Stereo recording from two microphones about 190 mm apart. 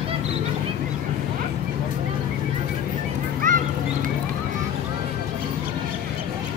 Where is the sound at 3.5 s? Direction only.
45° right (ahead or behind).